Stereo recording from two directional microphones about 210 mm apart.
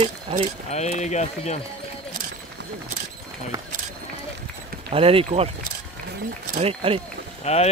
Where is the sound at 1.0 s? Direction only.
35° left (ahead or behind).